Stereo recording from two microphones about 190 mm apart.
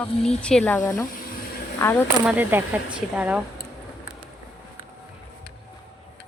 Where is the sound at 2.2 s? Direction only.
5° right (ahead or behind).